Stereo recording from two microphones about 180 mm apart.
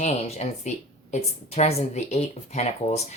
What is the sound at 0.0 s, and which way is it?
Speech, 35° left (ahead or behind).